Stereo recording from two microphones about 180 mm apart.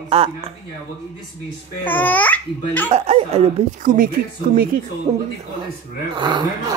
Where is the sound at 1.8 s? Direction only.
10° left (ahead or behind).